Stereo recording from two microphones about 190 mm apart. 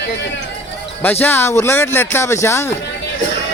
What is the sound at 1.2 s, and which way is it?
Speech, 10° left (ahead or behind).